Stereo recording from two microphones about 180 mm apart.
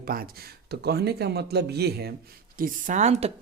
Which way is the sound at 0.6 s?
65° right (ahead or behind).